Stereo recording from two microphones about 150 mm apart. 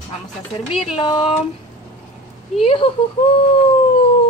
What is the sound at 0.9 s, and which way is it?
Speech, 35° left (ahead or behind).